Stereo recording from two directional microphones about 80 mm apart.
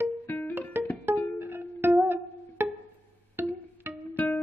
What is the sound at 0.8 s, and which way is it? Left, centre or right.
Music, right.